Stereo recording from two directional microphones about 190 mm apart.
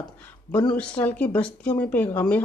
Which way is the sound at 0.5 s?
10° left (ahead or behind).